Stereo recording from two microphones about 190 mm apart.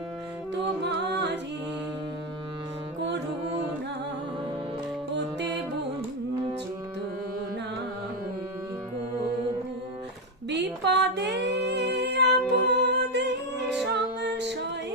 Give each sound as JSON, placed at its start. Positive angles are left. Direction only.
{"t": 0.5, "sound": "music", "side_deg": -65}
{"t": 5.1, "sound": "music", "side_deg": -65}
{"t": 10.5, "sound": "music", "side_deg": -65}